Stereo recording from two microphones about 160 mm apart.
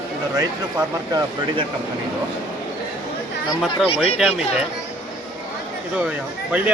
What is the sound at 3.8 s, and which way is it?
Speech, 40° left (ahead or behind).